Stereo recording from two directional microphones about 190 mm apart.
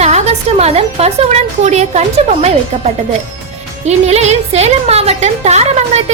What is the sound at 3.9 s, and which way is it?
A woman's voice, 35° right (ahead or behind).